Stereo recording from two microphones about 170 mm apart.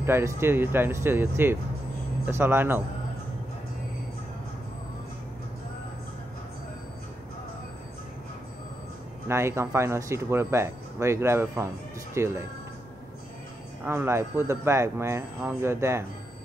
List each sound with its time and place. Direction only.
0.0 s speech: 15° right (ahead or behind)
9.3 s speech: 15° right (ahead or behind)
13.8 s speech: 15° right (ahead or behind)